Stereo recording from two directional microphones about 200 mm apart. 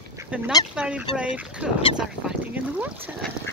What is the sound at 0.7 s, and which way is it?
Fowl, 5° right (ahead or behind).